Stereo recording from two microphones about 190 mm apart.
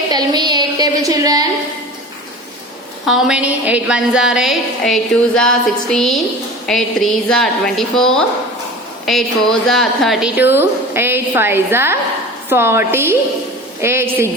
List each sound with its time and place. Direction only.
0.1 s a woman's voice: 20° right (ahead or behind)
3.1 s a woman's voice: 5° right (ahead or behind)